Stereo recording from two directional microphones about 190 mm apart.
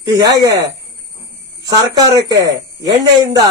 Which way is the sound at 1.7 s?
20° right (ahead or behind).